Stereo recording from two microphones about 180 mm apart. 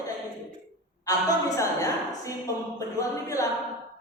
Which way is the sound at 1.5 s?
15° left (ahead or behind).